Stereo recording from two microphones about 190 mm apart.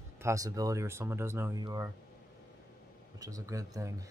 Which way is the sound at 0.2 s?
15° right (ahead or behind).